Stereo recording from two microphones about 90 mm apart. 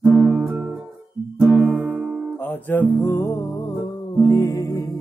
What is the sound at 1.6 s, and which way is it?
Music, 15° right (ahead or behind).